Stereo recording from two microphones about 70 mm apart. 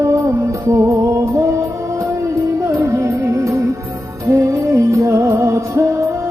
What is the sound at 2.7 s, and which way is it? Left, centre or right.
Music, right.